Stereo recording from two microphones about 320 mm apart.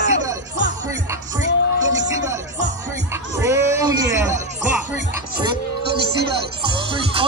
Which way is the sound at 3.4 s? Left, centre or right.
Centre.